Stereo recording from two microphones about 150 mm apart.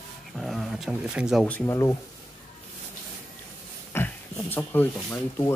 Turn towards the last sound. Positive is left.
turn(degrees=15)  # may be behind; listen again after turning